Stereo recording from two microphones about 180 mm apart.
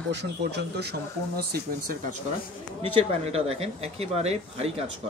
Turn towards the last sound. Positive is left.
turn(degrees=-35)  # may be behind; listen again after turning